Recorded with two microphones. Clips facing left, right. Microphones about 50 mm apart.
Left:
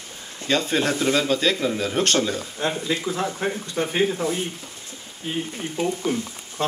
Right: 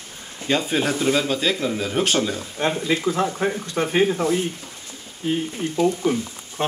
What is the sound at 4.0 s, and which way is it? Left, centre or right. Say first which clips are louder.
Speech: right 3 dB; right.